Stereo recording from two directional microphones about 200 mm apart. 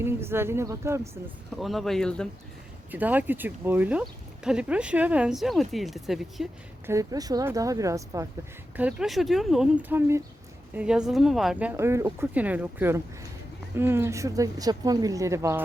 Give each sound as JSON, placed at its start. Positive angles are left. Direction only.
{"t": 0.0, "sound": "speech", "side_deg": -10}
{"t": 1.5, "sound": "speech", "side_deg": 0}
{"t": 2.9, "sound": "speech", "side_deg": -10}
{"t": 6.8, "sound": "speech", "side_deg": -15}
{"t": 8.7, "sound": "speech", "side_deg": -5}
{"t": 11.7, "sound": "speech", "side_deg": -15}